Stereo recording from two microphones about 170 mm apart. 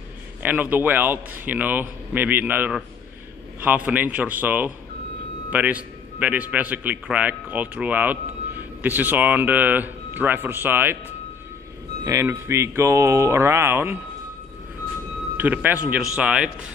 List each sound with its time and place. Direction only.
0.4 s a man's voice: 10° right (ahead or behind)
12.0 s speech: 20° right (ahead or behind)
15.3 s speech: 10° right (ahead or behind)